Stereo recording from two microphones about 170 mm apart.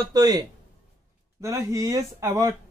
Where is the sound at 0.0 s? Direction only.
25° right (ahead or behind).